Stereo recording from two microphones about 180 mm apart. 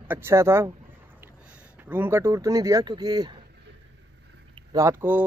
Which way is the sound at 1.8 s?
10° right (ahead or behind).